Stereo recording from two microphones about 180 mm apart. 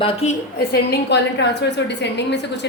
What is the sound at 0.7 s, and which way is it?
A woman's voice, 70° left (ahead or behind).